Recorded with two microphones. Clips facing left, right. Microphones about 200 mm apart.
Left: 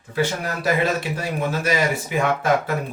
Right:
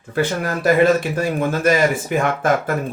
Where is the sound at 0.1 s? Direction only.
50° right (ahead or behind).